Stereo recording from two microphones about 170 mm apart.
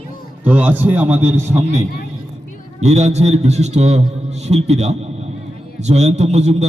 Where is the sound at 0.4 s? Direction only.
10° right (ahead or behind).